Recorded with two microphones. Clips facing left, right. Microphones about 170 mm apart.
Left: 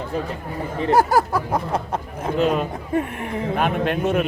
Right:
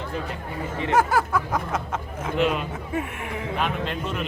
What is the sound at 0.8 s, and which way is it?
Speech, 35° left (ahead or behind).